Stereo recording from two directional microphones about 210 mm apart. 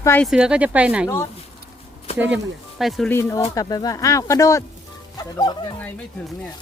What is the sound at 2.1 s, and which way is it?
Speech, 10° right (ahead or behind).